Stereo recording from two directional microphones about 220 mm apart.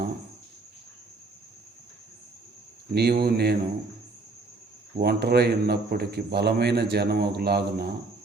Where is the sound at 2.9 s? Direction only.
50° right (ahead or behind).